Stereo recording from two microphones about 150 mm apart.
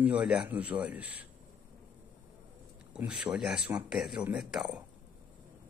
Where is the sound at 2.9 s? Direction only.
5° right (ahead or behind).